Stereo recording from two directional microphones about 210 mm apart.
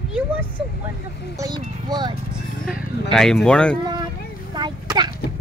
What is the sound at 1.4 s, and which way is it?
Speech, 20° right (ahead or behind).